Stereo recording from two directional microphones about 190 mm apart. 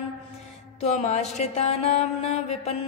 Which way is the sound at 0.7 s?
35° left (ahead or behind).